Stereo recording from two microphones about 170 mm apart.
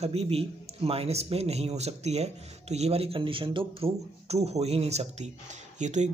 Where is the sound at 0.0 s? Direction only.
35° right (ahead or behind).